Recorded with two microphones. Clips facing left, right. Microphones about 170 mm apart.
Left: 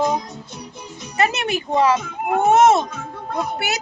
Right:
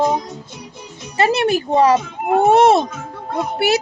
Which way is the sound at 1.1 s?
30° right (ahead or behind).